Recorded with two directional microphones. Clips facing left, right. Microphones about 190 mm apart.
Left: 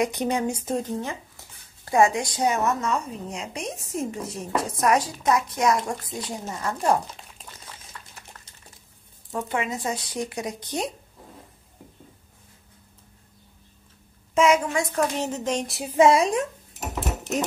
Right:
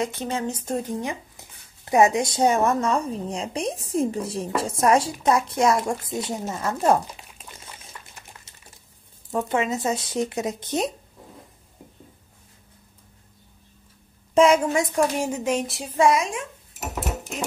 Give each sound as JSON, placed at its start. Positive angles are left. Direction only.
{"t": 0.0, "sound": "speech", "side_deg": 15}
{"t": 0.9, "sound": "a woman's voice", "side_deg": -15}
{"t": 9.3, "sound": "a woman's voice", "side_deg": -20}
{"t": 14.3, "sound": "a woman's voice", "side_deg": -30}
{"t": 15.0, "sound": "speech", "side_deg": -10}
{"t": 16.1, "sound": "speech", "side_deg": 35}